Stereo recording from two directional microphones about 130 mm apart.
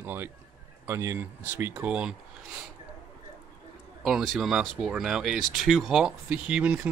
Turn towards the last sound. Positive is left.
turn(degrees=-10)  # may be behind; listen again after turning